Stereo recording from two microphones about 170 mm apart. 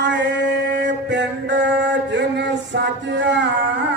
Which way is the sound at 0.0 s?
90° right.